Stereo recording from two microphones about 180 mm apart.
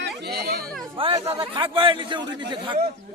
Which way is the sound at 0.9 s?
30° right (ahead or behind).